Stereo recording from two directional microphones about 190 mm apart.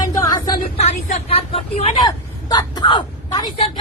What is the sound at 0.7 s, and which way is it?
Speech, 35° left (ahead or behind).